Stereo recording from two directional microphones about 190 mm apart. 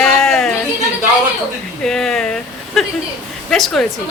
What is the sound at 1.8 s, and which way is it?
Speech, 5° left (ahead or behind).